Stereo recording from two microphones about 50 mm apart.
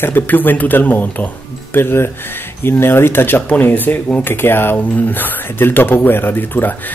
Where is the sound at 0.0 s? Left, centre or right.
Left.